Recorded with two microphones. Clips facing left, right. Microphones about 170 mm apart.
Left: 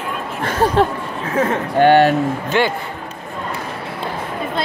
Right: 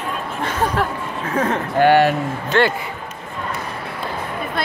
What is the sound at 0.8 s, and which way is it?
Speech, 25° left (ahead or behind).